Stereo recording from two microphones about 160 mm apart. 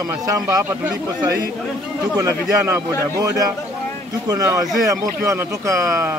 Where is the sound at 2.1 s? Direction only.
20° right (ahead or behind).